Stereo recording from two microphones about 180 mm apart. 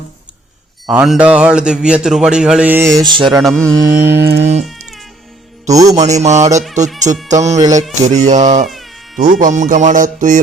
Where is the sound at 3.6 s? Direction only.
15° right (ahead or behind).